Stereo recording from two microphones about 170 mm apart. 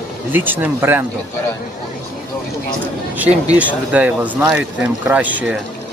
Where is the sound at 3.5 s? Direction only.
10° right (ahead or behind).